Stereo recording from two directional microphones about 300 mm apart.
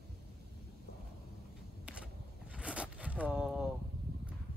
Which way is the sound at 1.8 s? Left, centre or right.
Centre.